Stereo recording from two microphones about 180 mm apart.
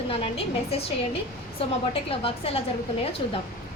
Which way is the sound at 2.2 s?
30° left (ahead or behind).